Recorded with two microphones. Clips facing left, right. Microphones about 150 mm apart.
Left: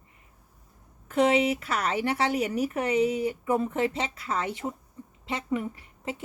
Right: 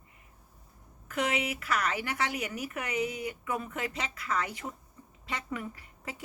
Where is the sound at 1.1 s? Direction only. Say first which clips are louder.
Left 9 dB; 30° left (ahead or behind).